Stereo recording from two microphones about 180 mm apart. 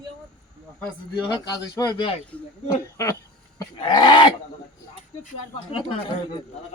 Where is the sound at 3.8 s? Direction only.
25° left (ahead or behind).